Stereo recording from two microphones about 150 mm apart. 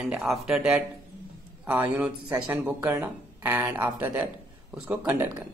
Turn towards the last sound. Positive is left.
turn(degrees=-10)  # may be behind; listen again after turning